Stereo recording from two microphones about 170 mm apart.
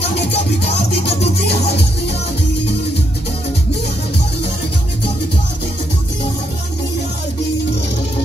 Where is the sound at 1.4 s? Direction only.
70° left (ahead or behind).